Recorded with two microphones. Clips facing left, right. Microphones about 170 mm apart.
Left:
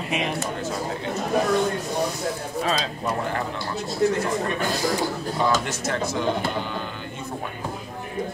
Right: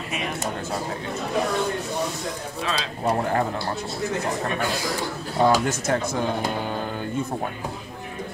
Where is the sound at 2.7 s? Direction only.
30° right (ahead or behind).